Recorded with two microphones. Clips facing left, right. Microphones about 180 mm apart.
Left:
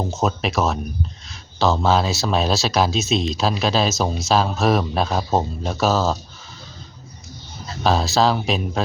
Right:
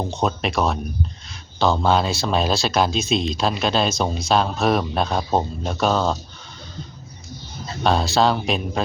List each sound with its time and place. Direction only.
0.0 s speech: 5° left (ahead or behind)
7.9 s speech: centre (ahead or behind)